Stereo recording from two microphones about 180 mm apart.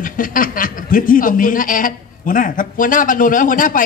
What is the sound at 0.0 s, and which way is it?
Speech, 50° left (ahead or behind).